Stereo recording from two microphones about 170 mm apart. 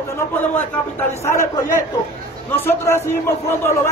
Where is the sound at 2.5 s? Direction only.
15° left (ahead or behind).